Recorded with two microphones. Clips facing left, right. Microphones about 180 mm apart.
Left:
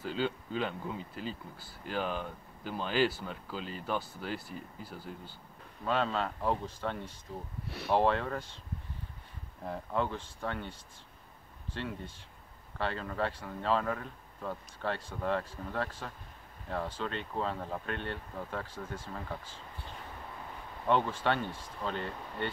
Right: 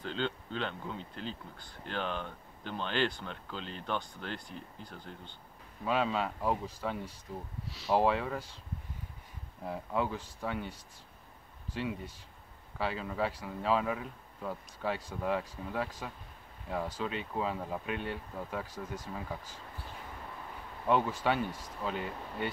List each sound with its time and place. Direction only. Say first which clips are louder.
0.0 s speech: left 2 dB; 5° left (ahead or behind)
5.9 s speech: even; 5° right (ahead or behind)
7.6 s speech: left 5 dB; 60° left (ahead or behind)
7.9 s speech: even; 5° right (ahead or behind)
9.7 s speech: even; 5° right (ahead or behind)
20.8 s speech: even; 5° right (ahead or behind)